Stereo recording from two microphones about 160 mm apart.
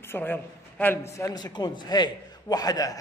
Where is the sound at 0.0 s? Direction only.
15° left (ahead or behind).